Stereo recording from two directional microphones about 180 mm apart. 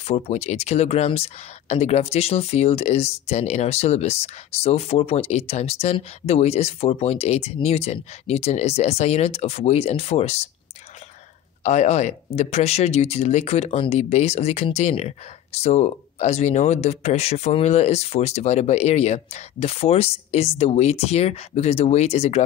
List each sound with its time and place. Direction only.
0.0 s speech: 35° left (ahead or behind)
11.6 s speech: 40° left (ahead or behind)